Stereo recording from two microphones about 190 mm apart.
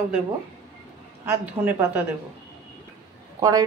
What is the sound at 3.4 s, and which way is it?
Speech, 20° right (ahead or behind).